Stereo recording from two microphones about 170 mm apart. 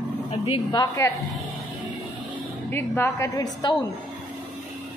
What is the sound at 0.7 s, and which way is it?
Speech, 20° left (ahead or behind).